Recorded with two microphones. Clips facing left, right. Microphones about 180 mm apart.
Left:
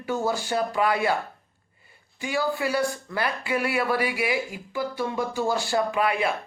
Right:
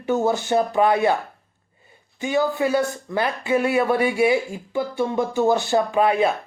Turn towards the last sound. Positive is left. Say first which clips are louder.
# right 5 dB
turn(degrees=-25)  # may be behind; listen again after turning